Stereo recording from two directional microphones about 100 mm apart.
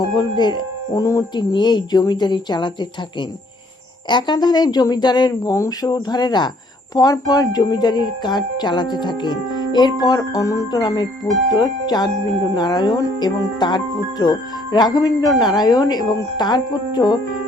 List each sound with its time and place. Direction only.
0.0 s speech: 45° left (ahead or behind)
4.1 s speech: 45° left (ahead or behind)
10.2 s speech: 30° left (ahead or behind)